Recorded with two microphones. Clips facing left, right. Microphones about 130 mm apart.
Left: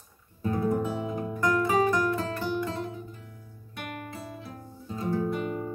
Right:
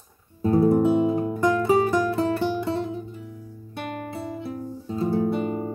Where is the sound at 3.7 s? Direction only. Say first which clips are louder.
Right 6 dB; 30° right (ahead or behind).